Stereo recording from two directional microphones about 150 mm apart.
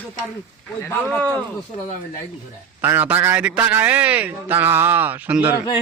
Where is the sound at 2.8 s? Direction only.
15° right (ahead or behind).